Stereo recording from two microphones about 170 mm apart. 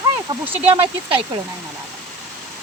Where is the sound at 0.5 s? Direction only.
30° right (ahead or behind).